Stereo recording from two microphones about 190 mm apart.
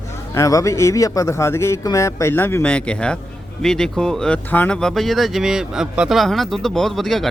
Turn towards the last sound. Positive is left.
turn(degrees=0)  # may be behind; listen again after turning